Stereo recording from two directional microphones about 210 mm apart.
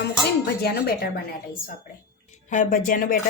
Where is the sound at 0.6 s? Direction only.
50° left (ahead or behind).